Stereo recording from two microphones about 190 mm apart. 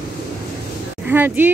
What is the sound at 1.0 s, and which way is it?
Speech, 10° right (ahead or behind).